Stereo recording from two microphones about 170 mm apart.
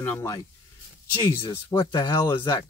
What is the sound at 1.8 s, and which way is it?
Speech, 25° left (ahead or behind).